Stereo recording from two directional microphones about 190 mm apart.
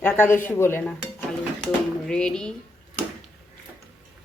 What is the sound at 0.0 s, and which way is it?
A woman's voice, 10° left (ahead or behind).